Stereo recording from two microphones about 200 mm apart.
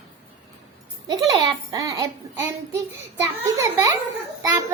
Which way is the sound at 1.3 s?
20° right (ahead or behind).